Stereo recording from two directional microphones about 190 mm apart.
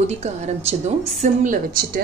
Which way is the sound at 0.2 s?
35° right (ahead or behind).